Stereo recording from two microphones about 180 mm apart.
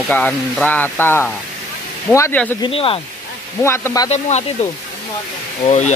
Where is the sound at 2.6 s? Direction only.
30° left (ahead or behind).